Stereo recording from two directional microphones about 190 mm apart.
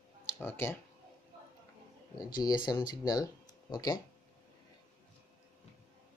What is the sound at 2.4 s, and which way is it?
Speech, 20° left (ahead or behind).